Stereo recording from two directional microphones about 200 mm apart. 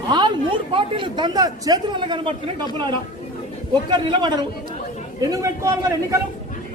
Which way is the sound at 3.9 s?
20° right (ahead or behind).